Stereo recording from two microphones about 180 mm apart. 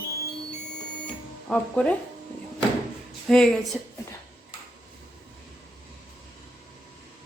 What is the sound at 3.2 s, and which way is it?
Speech, 5° left (ahead or behind).